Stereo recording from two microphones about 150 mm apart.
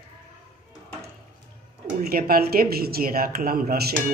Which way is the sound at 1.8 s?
85° right.